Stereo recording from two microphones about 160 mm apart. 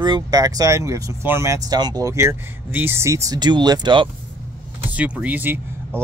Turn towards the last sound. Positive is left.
turn(degrees=-10)  # may be behind; listen again after turning